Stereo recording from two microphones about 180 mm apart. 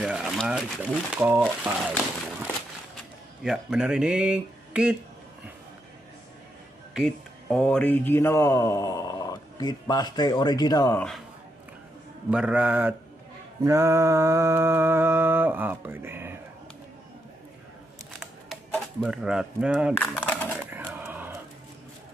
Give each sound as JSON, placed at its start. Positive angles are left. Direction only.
{"t": 0.0, "sound": "speech", "side_deg": -5}
{"t": 3.4, "sound": "speech", "side_deg": -5}
{"t": 6.9, "sound": "speech", "side_deg": 0}
{"t": 11.0, "sound": "speech", "side_deg": 0}
{"t": 12.3, "sound": "speech", "side_deg": -5}
{"t": 13.6, "sound": "mantra", "side_deg": -15}
{"t": 19.0, "sound": "speech", "side_deg": -5}
{"t": 20.0, "sound": "a sound", "side_deg": 10}
{"t": 20.7, "sound": "a sound", "side_deg": -10}